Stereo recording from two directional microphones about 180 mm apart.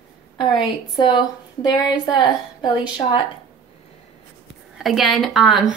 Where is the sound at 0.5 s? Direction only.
25° left (ahead or behind).